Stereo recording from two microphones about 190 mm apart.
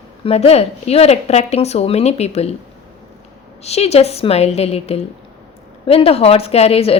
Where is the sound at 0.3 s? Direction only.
30° left (ahead or behind).